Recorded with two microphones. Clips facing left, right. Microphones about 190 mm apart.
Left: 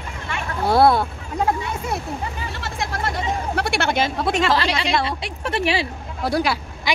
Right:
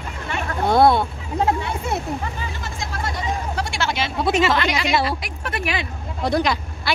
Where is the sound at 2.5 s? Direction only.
70° left (ahead or behind); by 4.1 s 50° left (ahead or behind).